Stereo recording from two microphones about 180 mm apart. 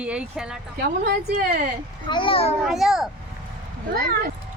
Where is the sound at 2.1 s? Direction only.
30° left (ahead or behind).